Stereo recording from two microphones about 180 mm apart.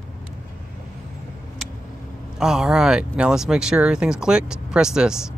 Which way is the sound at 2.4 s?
5° right (ahead or behind).